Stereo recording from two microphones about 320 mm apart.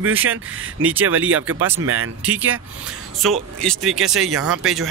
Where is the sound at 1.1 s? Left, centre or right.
Right.